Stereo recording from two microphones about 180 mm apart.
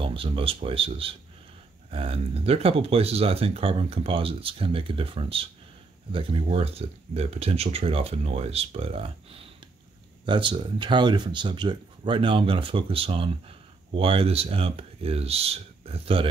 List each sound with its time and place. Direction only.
0.0 s speech: 30° right (ahead or behind)
10.2 s speech: 25° right (ahead or behind)